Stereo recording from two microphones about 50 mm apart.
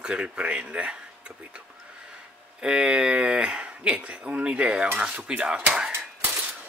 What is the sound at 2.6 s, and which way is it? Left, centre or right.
Speech, centre.